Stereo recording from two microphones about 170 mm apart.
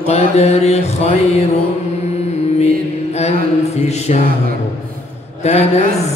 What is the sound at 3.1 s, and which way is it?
Mantra, 40° left (ahead or behind).